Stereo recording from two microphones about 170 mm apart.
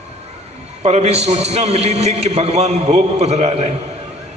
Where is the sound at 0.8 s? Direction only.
40° right (ahead or behind).